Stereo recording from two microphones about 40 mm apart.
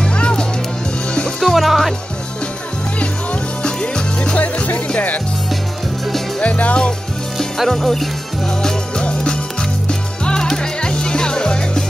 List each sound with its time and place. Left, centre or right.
0.1 s music: left
1.4 s music: centre
3.6 s music: left
4.4 s music: left
6.4 s music: left
7.3 s music: centre
8.9 s music: left